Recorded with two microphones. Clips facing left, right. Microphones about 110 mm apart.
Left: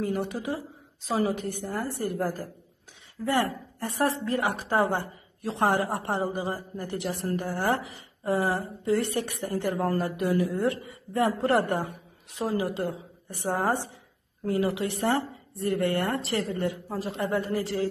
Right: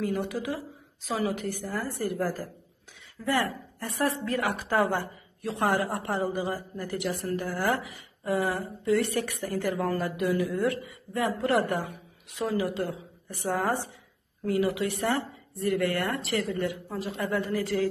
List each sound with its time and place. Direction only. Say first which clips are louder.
0.0 s a woman's voice: even; 30° left (ahead or behind)
9.4 s a woman's voice: left 3 dB; 35° left (ahead or behind)